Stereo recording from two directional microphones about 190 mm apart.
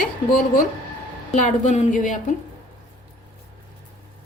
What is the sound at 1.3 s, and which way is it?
A woman's voice, 40° left (ahead or behind).